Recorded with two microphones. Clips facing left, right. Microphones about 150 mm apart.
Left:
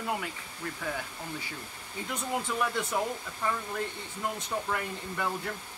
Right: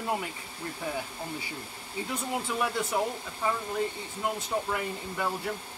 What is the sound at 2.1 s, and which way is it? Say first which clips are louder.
Speech: even; 10° right (ahead or behind).